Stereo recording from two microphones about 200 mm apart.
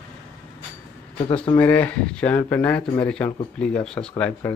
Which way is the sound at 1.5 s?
10° left (ahead or behind).